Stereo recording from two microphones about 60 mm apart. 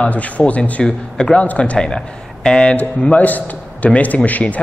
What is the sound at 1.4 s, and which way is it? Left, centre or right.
A man's voice, left.